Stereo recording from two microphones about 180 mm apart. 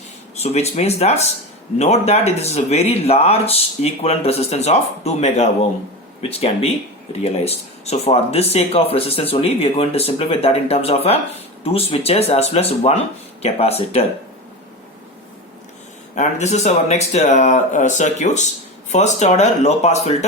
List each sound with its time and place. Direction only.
0.3 s speech: 35° left (ahead or behind)
16.1 s speech: 40° left (ahead or behind)